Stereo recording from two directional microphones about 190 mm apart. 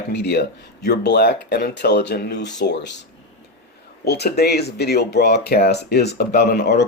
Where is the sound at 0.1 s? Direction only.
60° left (ahead or behind).